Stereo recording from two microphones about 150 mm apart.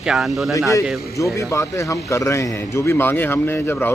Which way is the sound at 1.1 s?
20° left (ahead or behind).